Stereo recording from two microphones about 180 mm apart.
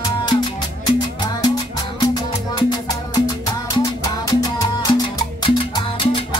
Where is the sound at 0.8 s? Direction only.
20° left (ahead or behind).